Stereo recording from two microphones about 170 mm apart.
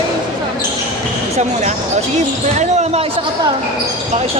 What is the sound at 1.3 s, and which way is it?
Speech, 40° right (ahead or behind).